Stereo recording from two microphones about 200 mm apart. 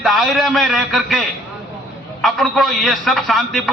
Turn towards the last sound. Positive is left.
turn(degrees=0)  # may be behind; listen again after turning